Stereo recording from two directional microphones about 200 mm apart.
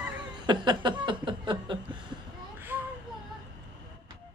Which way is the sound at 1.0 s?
25° right (ahead or behind).